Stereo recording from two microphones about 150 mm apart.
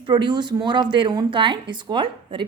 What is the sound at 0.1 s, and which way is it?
A woman's voice, 30° right (ahead or behind).